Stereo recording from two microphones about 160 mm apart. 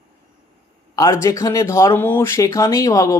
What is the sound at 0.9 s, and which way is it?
Speech, 20° left (ahead or behind).